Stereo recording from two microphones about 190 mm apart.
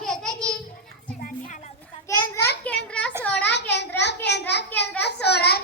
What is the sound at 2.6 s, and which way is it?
Children playing, 5° left (ahead or behind).